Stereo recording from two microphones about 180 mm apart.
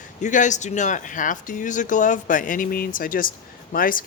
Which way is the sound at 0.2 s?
45° left (ahead or behind).